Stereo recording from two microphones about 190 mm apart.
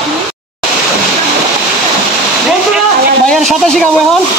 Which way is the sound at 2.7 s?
Centre (ahead or behind).